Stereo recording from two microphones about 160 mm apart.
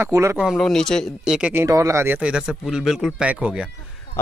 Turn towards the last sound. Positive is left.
turn(degrees=-5)  # may be behind; listen again after turning